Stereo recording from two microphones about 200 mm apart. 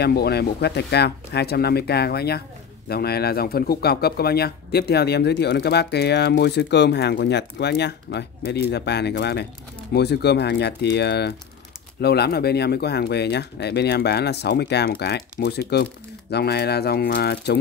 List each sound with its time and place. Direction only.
0.0 s speech: 50° left (ahead or behind)